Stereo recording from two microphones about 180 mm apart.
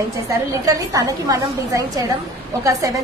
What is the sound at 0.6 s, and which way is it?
A woman's voice, 20° right (ahead or behind).